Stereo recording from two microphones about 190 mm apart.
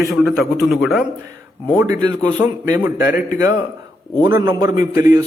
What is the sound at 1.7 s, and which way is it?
Speech, 15° right (ahead or behind).